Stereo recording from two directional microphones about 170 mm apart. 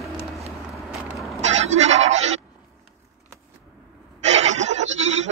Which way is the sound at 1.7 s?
40° right (ahead or behind).